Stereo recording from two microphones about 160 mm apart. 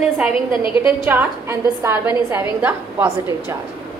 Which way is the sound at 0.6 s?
30° left (ahead or behind).